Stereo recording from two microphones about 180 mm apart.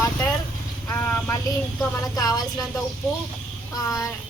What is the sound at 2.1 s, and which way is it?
Speech, 20° left (ahead or behind).